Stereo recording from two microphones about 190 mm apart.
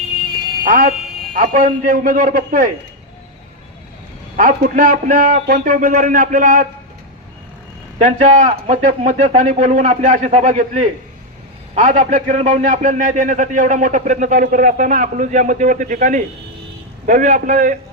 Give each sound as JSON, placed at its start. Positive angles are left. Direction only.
{"t": 0.6, "sound": "a man's voice", "side_deg": -45}
{"t": 4.4, "sound": "a man's voice", "side_deg": -45}
{"t": 7.9, "sound": "a man's voice", "side_deg": -40}